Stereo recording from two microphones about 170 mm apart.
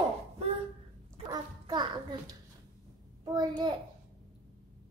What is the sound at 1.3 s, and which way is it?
Speech, 25° right (ahead or behind).